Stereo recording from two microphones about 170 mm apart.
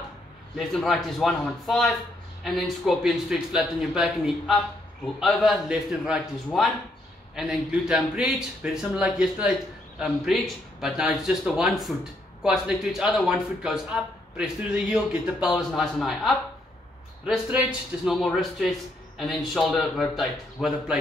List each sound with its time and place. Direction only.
0.6 s speech: centre (ahead or behind)